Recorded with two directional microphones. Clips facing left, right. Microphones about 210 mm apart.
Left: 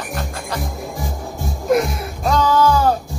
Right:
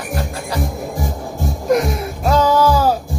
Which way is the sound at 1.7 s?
Centre (ahead or behind).